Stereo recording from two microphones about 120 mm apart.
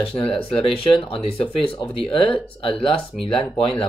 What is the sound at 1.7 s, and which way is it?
Speech, 5° left (ahead or behind).